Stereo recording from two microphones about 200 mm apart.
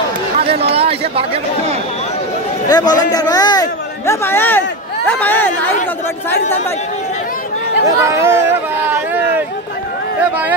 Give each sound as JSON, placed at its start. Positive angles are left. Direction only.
{"t": 0.7, "sound": "speech", "side_deg": -30}
{"t": 2.7, "sound": "a man's voice", "side_deg": 20}
{"t": 8.0, "sound": "speech", "side_deg": -15}
{"t": 8.9, "sound": "a sound", "side_deg": -10}